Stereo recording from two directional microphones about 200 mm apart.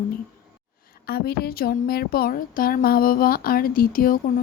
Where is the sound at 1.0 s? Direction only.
50° left (ahead or behind).